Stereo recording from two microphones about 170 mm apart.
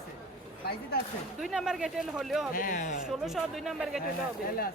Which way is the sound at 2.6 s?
50° left (ahead or behind).